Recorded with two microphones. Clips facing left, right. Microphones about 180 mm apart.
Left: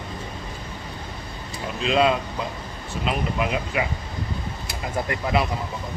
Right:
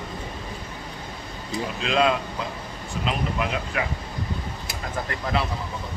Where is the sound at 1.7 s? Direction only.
Centre (ahead or behind).